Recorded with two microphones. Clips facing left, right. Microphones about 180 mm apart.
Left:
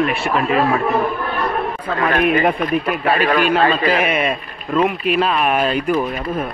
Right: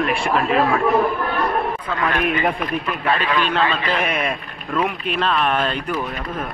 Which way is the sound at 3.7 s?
10° left (ahead or behind).